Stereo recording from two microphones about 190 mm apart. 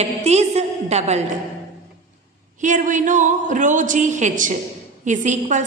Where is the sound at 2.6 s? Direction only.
40° right (ahead or behind).